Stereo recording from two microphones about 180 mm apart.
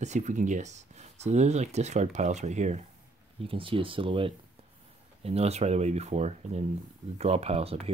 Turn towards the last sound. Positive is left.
turn(degrees=-35)  # may be behind; listen again after turning